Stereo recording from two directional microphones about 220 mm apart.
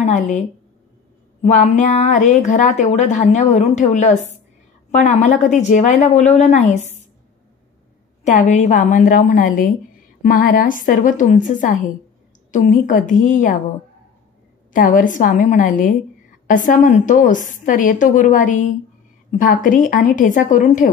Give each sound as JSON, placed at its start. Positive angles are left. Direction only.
{"t": 0.0, "sound": "a woman's voice", "side_deg": 30}
{"t": 1.4, "sound": "speech", "side_deg": 30}
{"t": 8.2, "sound": "speech", "side_deg": 35}
{"t": 14.7, "sound": "speech", "side_deg": 35}